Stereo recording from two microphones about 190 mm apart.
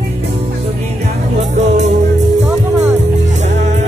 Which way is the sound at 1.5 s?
35° right (ahead or behind).